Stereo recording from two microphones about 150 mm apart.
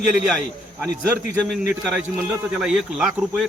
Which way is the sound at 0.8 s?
15° right (ahead or behind).